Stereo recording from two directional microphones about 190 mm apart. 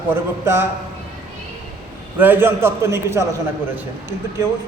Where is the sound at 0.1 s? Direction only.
10° right (ahead or behind).